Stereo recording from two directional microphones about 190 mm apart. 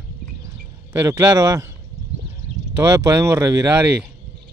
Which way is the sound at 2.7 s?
15° right (ahead or behind).